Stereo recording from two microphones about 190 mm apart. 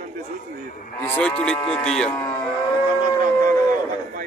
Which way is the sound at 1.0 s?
10° left (ahead or behind).